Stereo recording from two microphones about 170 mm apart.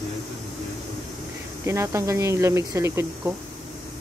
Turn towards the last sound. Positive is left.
turn(degrees=-15)  # may be behind; listen again after turning